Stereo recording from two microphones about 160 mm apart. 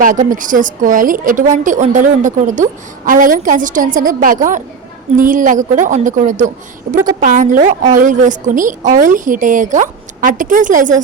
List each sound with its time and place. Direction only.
0.0 s a woman's voice: 55° right (ahead or behind)